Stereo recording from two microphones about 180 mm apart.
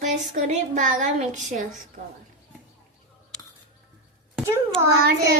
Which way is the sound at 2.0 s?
40° right (ahead or behind).